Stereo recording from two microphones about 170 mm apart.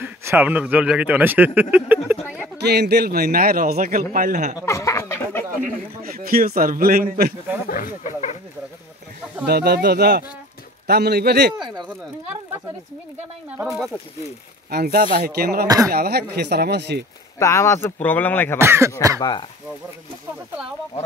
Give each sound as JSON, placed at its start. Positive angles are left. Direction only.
{"t": 0.0, "sound": "speech", "side_deg": -15}
{"t": 2.6, "sound": "a man's voice", "side_deg": -75}
{"t": 4.6, "sound": "a sound", "side_deg": 15}
{"t": 5.6, "sound": "a man's voice", "side_deg": -55}
{"t": 7.6, "sound": "speech", "side_deg": 55}
{"t": 9.5, "sound": "speech", "side_deg": -70}
{"t": 11.6, "sound": "speech", "side_deg": -25}
{"t": 13.6, "sound": "speech", "side_deg": 0}
{"t": 14.7, "sound": "a man's voice", "side_deg": -65}
{"t": 15.6, "sound": "speech", "side_deg": -20}
{"t": 15.9, "sound": "speech", "side_deg": -65}
{"t": 17.4, "sound": "speech", "side_deg": 15}
{"t": 18.6, "sound": "speech", "side_deg": -15}